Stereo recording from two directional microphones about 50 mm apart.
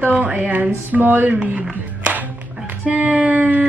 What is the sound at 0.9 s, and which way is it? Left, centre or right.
Speech, right.